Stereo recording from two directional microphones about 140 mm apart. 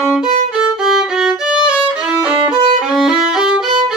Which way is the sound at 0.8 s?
5° right (ahead or behind).